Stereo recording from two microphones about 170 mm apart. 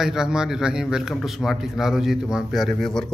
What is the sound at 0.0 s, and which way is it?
A man's voice, 5° right (ahead or behind).